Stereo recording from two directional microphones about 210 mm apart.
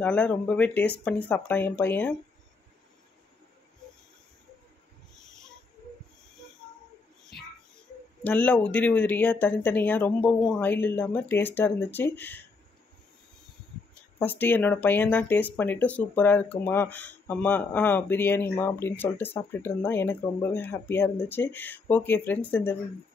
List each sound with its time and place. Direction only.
0.0 s speech: 5° left (ahead or behind)
8.2 s speech: 5° left (ahead or behind)
14.1 s speech: 10° left (ahead or behind)